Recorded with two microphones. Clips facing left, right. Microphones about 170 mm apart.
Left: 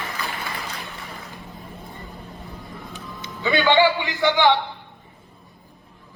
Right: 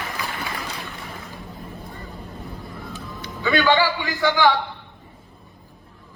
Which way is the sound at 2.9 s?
20° left (ahead or behind).